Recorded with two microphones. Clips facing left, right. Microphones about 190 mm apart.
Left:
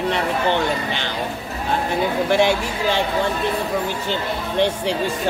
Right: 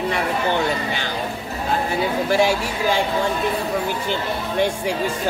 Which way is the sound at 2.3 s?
10° right (ahead or behind).